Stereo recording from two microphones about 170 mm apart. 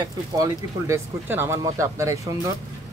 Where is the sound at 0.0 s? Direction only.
20° right (ahead or behind).